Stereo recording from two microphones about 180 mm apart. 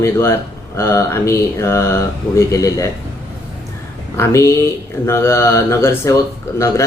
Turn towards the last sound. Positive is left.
turn(degrees=15)  # may be behind; listen again after turning